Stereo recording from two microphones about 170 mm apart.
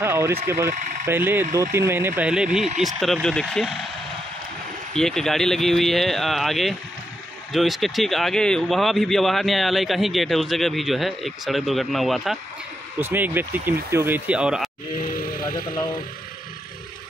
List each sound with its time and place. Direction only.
0.0 s speech: 15° right (ahead or behind); by 3.8 s centre (ahead or behind)
4.9 s speech: 5° left (ahead or behind)
13.0 s speech: 10° right (ahead or behind)
15.0 s music: 60° left (ahead or behind)
15.7 s speech: 25° left (ahead or behind)